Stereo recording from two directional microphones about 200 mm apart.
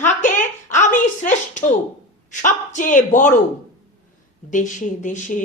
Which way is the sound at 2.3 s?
40° left (ahead or behind).